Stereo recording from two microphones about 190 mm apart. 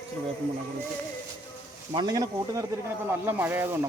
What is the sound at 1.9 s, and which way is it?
Speech, 25° right (ahead or behind).